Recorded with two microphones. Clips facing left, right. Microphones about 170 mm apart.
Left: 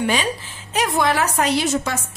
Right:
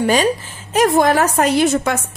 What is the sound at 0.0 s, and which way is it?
A woman's voice, 45° right (ahead or behind).